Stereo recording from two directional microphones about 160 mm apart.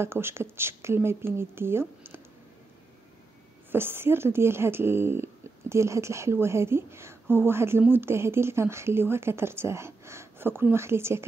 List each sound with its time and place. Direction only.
0.0 s speech: 15° right (ahead or behind)
3.7 s speech: 15° right (ahead or behind)